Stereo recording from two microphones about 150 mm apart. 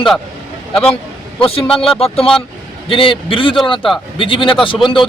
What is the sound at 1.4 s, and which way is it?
Speech, 40° left (ahead or behind).